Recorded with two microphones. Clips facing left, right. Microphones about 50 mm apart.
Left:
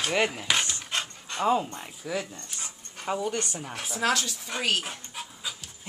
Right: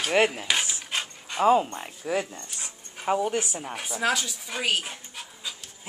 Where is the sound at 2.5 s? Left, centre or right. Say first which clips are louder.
Right 1 dB; centre.